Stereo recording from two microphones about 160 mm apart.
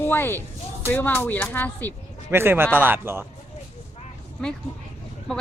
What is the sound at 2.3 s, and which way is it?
Speech, 15° right (ahead or behind).